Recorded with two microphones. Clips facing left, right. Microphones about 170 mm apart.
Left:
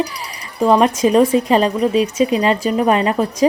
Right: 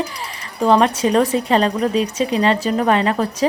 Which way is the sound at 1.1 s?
10° left (ahead or behind).